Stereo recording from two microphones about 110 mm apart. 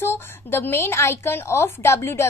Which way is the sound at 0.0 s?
20° left (ahead or behind).